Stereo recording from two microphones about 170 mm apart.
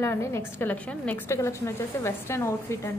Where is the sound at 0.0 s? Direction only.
15° left (ahead or behind).